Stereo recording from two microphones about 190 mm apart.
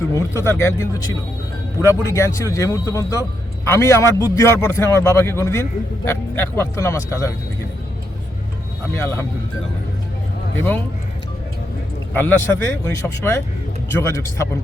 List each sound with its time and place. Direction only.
0.1 s a man's voice: 15° left (ahead or behind)
8.9 s a man's voice: 10° left (ahead or behind)
12.1 s a man's voice: 10° left (ahead or behind)